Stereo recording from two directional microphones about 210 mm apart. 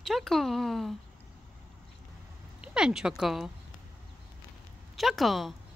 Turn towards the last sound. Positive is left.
turn(degrees=0)  # may be behind; listen again after turning